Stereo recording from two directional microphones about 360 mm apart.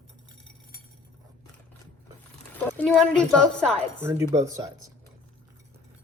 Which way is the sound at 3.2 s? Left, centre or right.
Centre.